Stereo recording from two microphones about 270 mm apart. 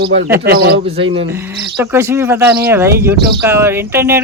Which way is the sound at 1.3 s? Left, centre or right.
Centre.